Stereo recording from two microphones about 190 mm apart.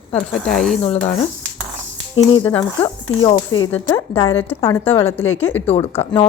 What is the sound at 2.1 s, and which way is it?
A woman's voice, 25° left (ahead or behind).